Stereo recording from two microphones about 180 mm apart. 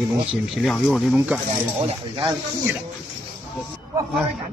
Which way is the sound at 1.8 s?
25° right (ahead or behind).